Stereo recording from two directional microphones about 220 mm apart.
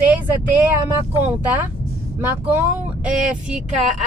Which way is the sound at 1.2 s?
5° right (ahead or behind).